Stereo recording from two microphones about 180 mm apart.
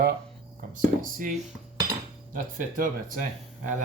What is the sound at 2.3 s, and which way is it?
Speech, 50° right (ahead or behind).